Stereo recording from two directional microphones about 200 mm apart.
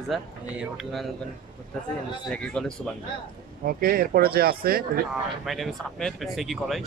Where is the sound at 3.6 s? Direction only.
50° right (ahead or behind).